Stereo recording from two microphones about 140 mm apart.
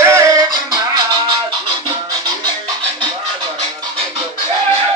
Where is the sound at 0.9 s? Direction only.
35° right (ahead or behind).